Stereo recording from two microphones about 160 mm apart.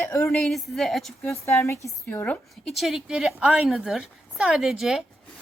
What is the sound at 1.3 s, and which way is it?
A woman's voice, 15° left (ahead or behind).